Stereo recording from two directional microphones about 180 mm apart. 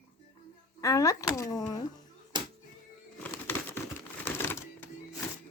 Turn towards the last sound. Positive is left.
turn(degrees=10)  # may be behind; listen again after turning